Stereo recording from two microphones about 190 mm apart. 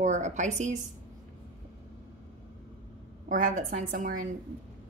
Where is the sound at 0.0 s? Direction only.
40° right (ahead or behind).